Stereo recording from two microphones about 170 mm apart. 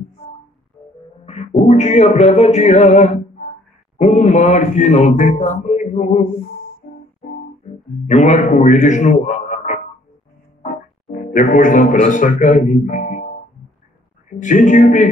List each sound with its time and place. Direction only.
1.2 s music: 40° left (ahead or behind)
1.7 s speech: 45° left (ahead or behind)
6.8 s music: 50° left (ahead or behind)
8.1 s a man's voice: 45° left (ahead or behind)
14.4 s speech: 50° left (ahead or behind)